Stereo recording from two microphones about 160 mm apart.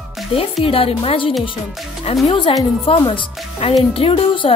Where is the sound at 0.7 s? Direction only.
35° left (ahead or behind).